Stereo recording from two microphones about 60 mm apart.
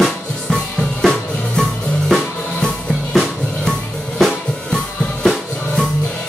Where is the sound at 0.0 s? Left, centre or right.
Centre.